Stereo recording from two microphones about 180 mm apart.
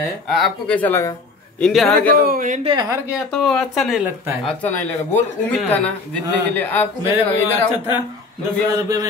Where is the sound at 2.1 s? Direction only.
50° right (ahead or behind).